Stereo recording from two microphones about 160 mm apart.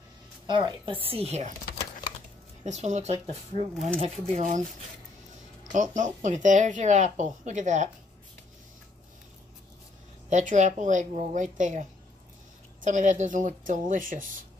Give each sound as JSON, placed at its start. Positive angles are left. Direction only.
{"t": 0.5, "sound": "speech", "side_deg": -30}
{"t": 2.6, "sound": "speech", "side_deg": -45}
{"t": 4.3, "sound": "speech", "side_deg": -50}
{"t": 10.3, "sound": "speech", "side_deg": -50}
{"t": 12.8, "sound": "speech", "side_deg": -50}